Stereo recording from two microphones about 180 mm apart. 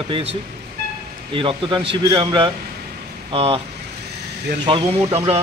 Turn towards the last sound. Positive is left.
turn(degrees=-35)  # may be behind; listen again after turning